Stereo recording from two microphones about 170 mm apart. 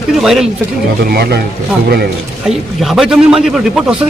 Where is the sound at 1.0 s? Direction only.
70° right (ahead or behind).